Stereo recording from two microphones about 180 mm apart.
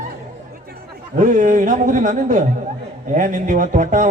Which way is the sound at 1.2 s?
45° right (ahead or behind).